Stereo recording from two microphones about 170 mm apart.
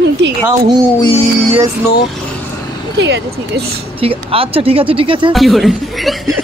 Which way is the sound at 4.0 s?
35° right (ahead or behind).